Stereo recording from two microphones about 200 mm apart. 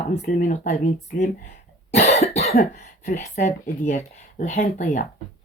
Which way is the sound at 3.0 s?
35° left (ahead or behind).